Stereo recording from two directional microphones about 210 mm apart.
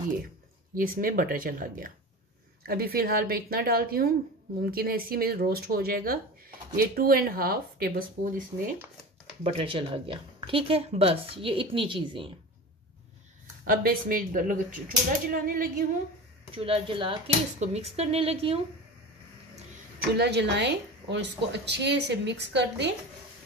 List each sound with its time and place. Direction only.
0.7 s speech: 40° right (ahead or behind)
9.4 s speech: 25° right (ahead or behind)
13.7 s speech: 45° right (ahead or behind)
16.5 s speech: 25° right (ahead or behind)
20.2 s a woman's voice: 55° right (ahead or behind)